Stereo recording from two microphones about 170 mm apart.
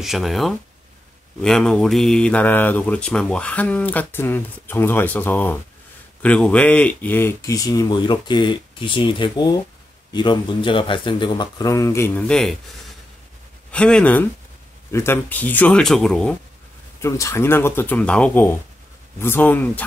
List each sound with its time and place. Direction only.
0.0 s speech: centre (ahead or behind); by 12.3 s 15° left (ahead or behind)
12.3 s speech: 5° left (ahead or behind)
13.7 s speech: 5° left (ahead or behind)
17.0 s speech: 15° left (ahead or behind)